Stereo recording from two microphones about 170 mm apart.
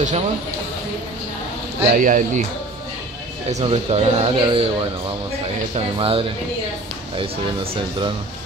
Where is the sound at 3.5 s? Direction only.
35° right (ahead or behind).